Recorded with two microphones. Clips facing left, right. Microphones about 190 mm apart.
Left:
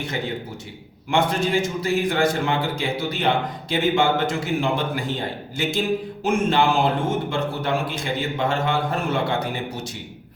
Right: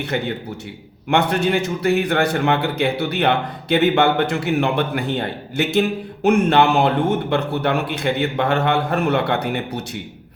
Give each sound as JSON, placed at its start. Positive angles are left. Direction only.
{"t": 0.1, "sound": "a man's voice", "side_deg": -60}